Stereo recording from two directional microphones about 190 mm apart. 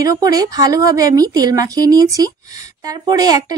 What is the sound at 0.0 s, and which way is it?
Speech, 20° right (ahead or behind).